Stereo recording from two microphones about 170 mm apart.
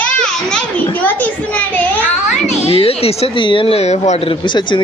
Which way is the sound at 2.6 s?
35° left (ahead or behind).